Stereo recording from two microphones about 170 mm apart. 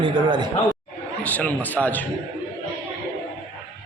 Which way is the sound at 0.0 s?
25° right (ahead or behind).